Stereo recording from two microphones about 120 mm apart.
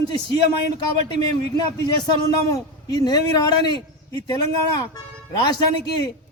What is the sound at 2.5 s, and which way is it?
A man's voice, 30° left (ahead or behind).